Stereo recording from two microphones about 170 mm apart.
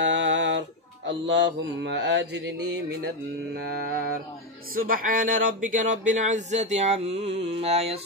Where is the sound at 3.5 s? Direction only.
65° right (ahead or behind).